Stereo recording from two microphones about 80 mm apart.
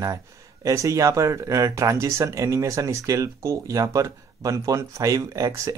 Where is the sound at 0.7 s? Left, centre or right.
Right.